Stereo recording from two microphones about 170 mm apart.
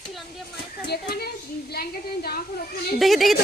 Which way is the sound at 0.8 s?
70° left (ahead or behind).